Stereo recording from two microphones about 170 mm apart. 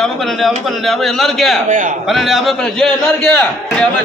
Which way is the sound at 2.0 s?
Centre (ahead or behind).